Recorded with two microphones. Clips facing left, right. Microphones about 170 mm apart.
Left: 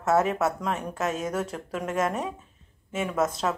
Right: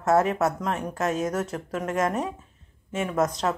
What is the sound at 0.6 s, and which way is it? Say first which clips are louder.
Speech: right 1 dB; 25° right (ahead or behind).